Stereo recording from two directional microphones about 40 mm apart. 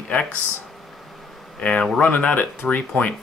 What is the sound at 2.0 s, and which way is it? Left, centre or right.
Speech, left.